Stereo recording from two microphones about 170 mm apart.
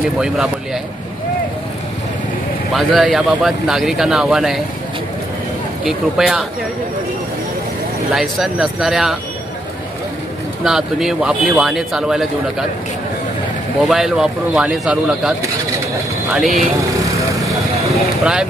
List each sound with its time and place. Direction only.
2.7 s a man's voice: centre (ahead or behind)
5.9 s a man's voice: 5° right (ahead or behind)
8.1 s a man's voice: centre (ahead or behind)
10.6 s a man's voice: 5° right (ahead or behind)
13.8 s a man's voice: 5° right (ahead or behind)
16.9 s vehicle: 20° right (ahead or behind)
18.2 s a man's voice: 5° right (ahead or behind)